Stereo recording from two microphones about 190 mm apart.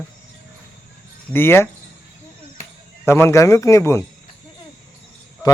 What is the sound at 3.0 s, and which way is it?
Speech, 15° left (ahead or behind).